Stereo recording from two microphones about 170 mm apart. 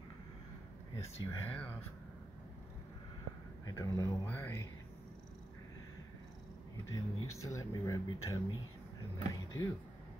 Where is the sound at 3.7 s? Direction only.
20° left (ahead or behind).